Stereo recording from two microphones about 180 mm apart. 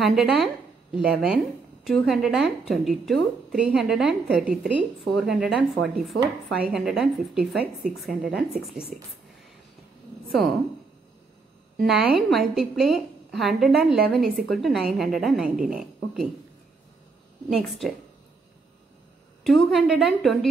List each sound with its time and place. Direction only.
0.0 s a woman's voice: centre (ahead or behind)
11.7 s a woman's voice: centre (ahead or behind)
17.5 s a woman's voice: centre (ahead or behind)
19.4 s a woman's voice: centre (ahead or behind)